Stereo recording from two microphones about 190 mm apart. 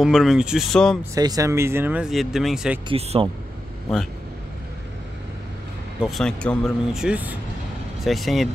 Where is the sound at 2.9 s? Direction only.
30° right (ahead or behind).